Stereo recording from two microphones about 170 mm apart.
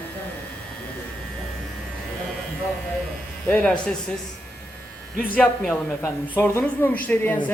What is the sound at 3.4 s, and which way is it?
Speech, 5° left (ahead or behind).